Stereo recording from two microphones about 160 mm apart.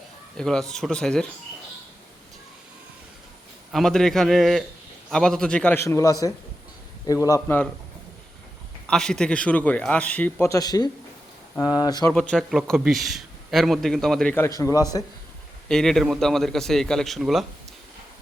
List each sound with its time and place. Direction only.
0.3 s a man's voice: 5° left (ahead or behind)
3.7 s a man's voice: centre (ahead or behind)
5.8 s a man's voice: 20° left (ahead or behind)
8.9 s a man's voice: 5° left (ahead or behind); by 12.1 s 25° left (ahead or behind)
12.1 s a man's voice: 5° left (ahead or behind)
14.3 s a man's voice: 15° left (ahead or behind)
15.7 s a man's voice: centre (ahead or behind)